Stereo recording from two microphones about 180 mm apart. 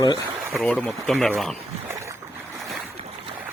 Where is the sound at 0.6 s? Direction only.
10° left (ahead or behind).